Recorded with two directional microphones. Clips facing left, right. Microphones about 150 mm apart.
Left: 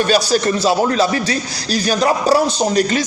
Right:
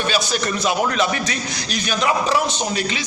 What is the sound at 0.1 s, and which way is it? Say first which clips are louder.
A man's voice: left 7 dB; 35° left (ahead or behind).